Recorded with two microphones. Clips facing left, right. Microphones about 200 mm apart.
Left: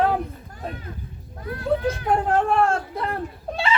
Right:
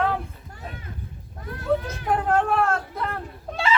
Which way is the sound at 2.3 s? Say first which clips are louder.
Left 1 dB; 30° left (ahead or behind).